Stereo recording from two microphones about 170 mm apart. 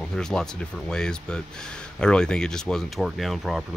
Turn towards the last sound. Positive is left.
turn(degrees=0)  # may be behind; listen again after turning